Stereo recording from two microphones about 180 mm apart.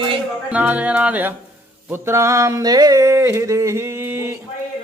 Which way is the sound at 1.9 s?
15° right (ahead or behind).